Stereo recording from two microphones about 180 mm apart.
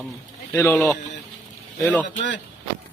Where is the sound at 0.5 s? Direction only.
15° left (ahead or behind).